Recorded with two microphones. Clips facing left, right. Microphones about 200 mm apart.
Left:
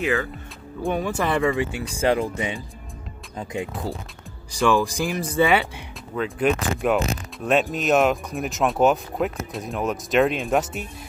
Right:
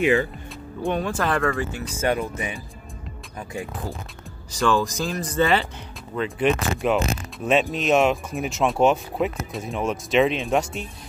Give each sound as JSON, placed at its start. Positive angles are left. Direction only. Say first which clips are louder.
{"t": 0.8, "sound": "speech", "louder": "even", "side_deg": 10}
{"t": 2.0, "sound": "speech", "louder": "left 3 dB", "side_deg": 25}
{"t": 4.5, "sound": "speech", "louder": "left 2 dB", "side_deg": 10}